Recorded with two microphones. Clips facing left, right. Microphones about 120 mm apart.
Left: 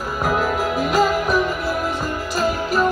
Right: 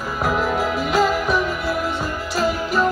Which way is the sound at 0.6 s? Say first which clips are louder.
Left 1 dB; centre (ahead or behind).